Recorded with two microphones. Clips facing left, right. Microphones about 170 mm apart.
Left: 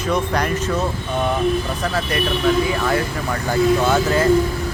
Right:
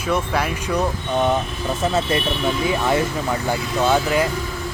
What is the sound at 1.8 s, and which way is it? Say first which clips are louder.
Speech: right 1 dB; 25° right (ahead or behind).